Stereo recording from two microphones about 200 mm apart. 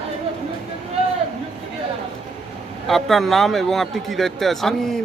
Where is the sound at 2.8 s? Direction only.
Centre (ahead or behind).